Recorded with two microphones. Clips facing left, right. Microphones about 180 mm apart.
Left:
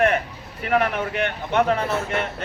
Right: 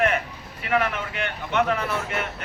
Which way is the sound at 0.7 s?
50° left (ahead or behind).